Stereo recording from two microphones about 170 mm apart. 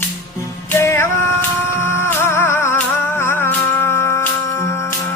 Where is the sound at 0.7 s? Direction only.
15° left (ahead or behind).